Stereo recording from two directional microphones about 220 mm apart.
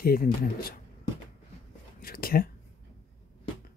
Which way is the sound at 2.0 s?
40° left (ahead or behind).